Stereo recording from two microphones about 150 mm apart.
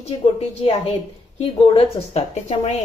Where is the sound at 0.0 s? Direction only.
40° left (ahead or behind).